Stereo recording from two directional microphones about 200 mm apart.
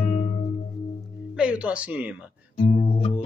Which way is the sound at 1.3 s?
5° right (ahead or behind).